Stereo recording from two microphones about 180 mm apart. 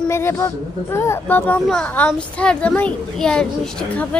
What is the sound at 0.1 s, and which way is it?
Speech, 15° left (ahead or behind).